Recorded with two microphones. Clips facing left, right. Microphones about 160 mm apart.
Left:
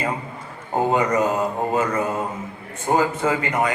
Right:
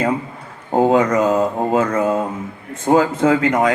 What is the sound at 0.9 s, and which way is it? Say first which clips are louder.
A man's voice: right 4 dB; 90° right.